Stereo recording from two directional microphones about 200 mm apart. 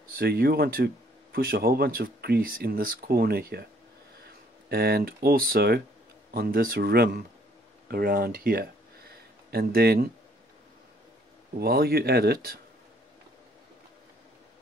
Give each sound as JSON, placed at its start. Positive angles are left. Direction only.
{"t": 0.2, "sound": "speech", "side_deg": -50}
{"t": 11.6, "sound": "speech", "side_deg": -50}